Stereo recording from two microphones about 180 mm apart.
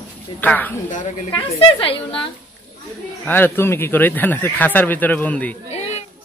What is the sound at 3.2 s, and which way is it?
A man's voice, 10° left (ahead or behind).